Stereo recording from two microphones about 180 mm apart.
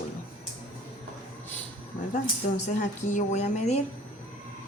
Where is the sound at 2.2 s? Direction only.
40° left (ahead or behind).